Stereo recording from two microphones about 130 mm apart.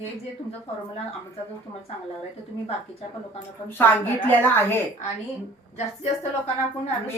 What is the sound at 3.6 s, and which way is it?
A woman's voice, 15° left (ahead or behind).